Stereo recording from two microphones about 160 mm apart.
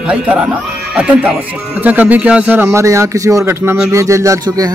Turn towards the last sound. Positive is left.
turn(degrees=-20)  # may be behind; listen again after turning